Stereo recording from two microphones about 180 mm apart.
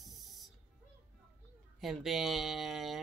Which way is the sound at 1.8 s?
Centre (ahead or behind).